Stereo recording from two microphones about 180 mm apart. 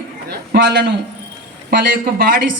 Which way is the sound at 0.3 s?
65° right (ahead or behind).